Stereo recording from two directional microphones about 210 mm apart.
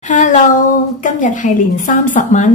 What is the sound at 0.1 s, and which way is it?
A woman's voice, 35° left (ahead or behind).